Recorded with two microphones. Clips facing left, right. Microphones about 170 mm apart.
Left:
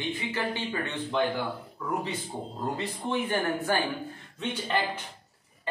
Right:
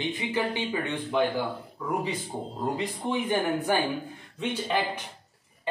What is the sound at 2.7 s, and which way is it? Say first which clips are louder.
Speech: left 1 dB; 15° right (ahead or behind).